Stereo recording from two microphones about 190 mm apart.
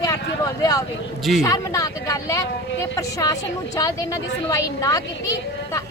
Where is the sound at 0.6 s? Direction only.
20° left (ahead or behind).